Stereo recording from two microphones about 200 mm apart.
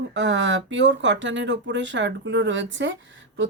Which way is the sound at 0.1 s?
65° right (ahead or behind).